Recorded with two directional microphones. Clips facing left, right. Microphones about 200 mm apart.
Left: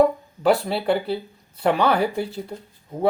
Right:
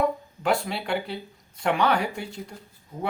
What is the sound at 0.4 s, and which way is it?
Speech, 35° left (ahead or behind).